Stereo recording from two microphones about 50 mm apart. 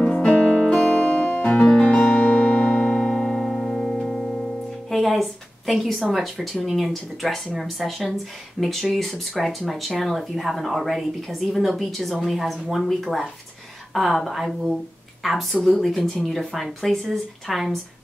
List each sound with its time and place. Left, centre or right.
0.0 s music: centre
4.8 s a sound: centre
6.1 s speech: centre